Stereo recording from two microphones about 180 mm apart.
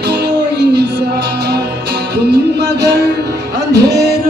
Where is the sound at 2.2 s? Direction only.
70° right (ahead or behind).